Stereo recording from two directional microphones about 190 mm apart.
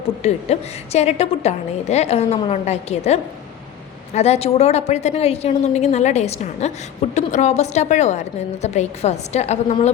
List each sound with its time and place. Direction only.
0.2 s a woman's voice: 35° left (ahead or behind)